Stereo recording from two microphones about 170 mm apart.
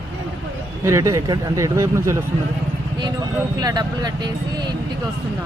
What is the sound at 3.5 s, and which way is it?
A man's voice, 25° right (ahead or behind).